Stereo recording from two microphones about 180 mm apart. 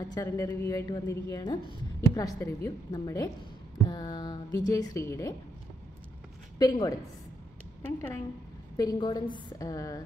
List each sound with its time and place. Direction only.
0.0 s a woman's voice: 20° left (ahead or behind)
6.6 s a woman's voice: 20° left (ahead or behind)
8.7 s a woman's voice: 25° left (ahead or behind)